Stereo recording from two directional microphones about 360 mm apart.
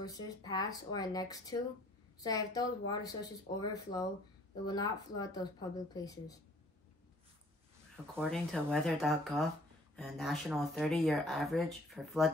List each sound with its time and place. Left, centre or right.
0.0 s speech: centre
8.2 s speech: centre